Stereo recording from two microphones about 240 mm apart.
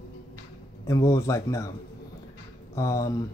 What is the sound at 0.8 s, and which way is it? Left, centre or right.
Speech, centre.